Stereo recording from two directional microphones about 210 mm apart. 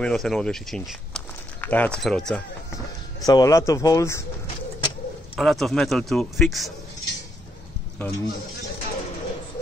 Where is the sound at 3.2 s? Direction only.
15° left (ahead or behind).